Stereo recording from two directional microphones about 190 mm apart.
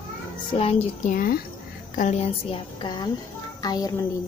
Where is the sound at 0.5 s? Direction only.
35° left (ahead or behind).